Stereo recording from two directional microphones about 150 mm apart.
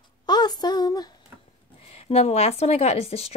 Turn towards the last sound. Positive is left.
turn(degrees=45)  # may be behind; listen again after turning